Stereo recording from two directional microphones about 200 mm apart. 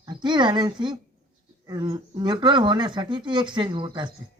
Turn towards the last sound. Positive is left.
turn(degrees=-25)  # may be behind; listen again after turning